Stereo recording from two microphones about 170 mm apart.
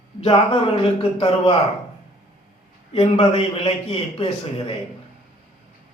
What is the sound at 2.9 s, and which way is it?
A man's voice, 35° left (ahead or behind).